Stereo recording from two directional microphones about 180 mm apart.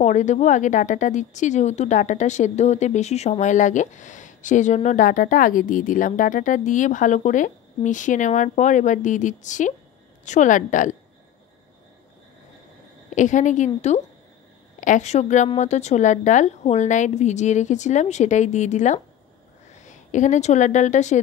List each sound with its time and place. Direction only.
0.0 s speech: 40° left (ahead or behind)
13.1 s a woman's voice: 45° left (ahead or behind)